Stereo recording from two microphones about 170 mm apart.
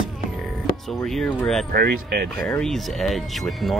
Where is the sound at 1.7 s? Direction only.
65° right (ahead or behind).